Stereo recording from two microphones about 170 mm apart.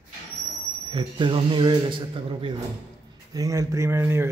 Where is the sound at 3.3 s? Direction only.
20° right (ahead or behind).